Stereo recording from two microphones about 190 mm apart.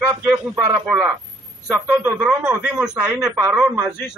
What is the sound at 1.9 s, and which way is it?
A man's voice, 10° right (ahead or behind).